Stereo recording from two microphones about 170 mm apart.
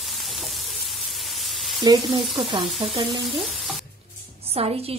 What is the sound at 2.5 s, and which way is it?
Speech, 30° right (ahead or behind).